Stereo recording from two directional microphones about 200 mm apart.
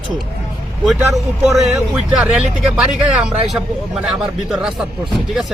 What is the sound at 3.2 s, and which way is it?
Speech, 5° right (ahead or behind).